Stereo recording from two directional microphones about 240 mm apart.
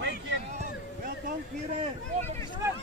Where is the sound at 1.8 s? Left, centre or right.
Right.